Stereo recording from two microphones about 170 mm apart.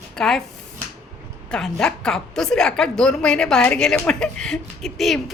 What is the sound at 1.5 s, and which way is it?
A woman's voice, 5° left (ahead or behind).